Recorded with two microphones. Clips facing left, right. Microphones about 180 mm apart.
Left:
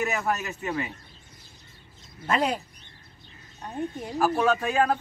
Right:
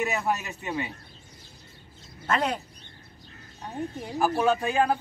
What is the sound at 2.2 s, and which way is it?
Speech, 10° left (ahead or behind).